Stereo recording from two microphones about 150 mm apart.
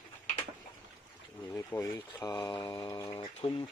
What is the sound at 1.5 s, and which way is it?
Speech, 20° left (ahead or behind).